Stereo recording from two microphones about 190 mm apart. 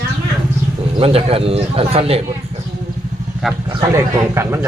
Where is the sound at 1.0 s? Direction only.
30° right (ahead or behind).